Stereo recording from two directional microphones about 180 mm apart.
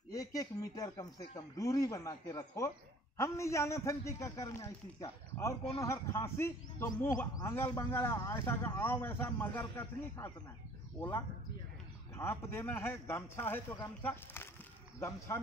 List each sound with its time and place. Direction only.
0.1 s a man's voice: 20° left (ahead or behind)